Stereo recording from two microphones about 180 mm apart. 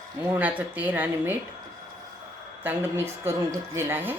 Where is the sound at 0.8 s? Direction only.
10° right (ahead or behind).